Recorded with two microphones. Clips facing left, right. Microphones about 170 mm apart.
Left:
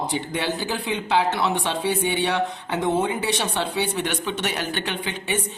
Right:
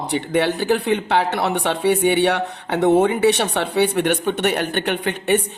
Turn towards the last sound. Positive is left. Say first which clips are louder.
# right 8 dB
turn(degrees=-60)  # may be behind; listen again after turning